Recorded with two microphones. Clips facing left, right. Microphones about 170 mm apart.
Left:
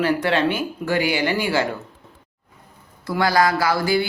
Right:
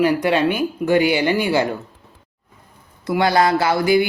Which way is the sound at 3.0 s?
20° right (ahead or behind).